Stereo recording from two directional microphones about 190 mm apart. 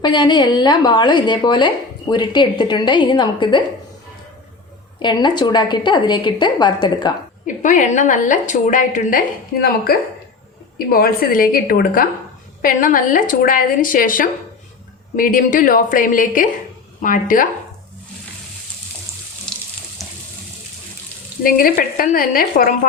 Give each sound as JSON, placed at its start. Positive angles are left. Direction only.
{"t": 0.0, "sound": "a woman's voice", "side_deg": 20}
{"t": 5.0, "sound": "a woman's voice", "side_deg": 25}
{"t": 7.4, "sound": "a woman's voice", "side_deg": 40}
{"t": 10.8, "sound": "a woman's voice", "side_deg": 50}
{"t": 19.5, "sound": "water tap", "side_deg": 5}
{"t": 21.4, "sound": "a woman's voice", "side_deg": 50}